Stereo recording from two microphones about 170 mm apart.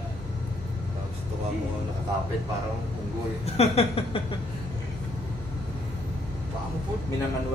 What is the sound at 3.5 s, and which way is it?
Speech, 35° left (ahead or behind).